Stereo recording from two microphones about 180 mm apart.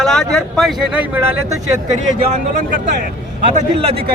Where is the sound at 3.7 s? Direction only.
30° right (ahead or behind).